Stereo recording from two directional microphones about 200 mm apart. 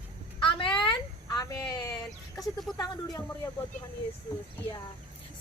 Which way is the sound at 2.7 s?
20° left (ahead or behind).